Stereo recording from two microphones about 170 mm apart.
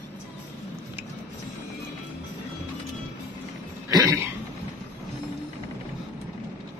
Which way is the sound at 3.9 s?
20° right (ahead or behind).